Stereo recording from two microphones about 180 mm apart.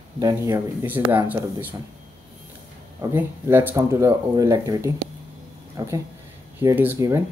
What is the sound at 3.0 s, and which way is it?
Speech, 15° right (ahead or behind).